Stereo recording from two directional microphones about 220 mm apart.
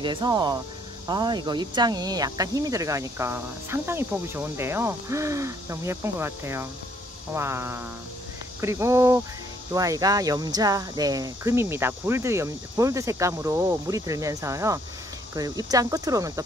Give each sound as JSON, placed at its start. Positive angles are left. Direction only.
{"t": 0.0, "sound": "speech", "side_deg": -20}